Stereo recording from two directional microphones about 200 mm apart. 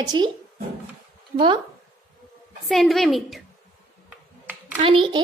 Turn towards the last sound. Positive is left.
turn(degrees=-25)  # may be behind; listen again after turning